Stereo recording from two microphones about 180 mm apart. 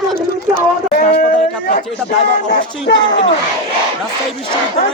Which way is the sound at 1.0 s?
55° left (ahead or behind).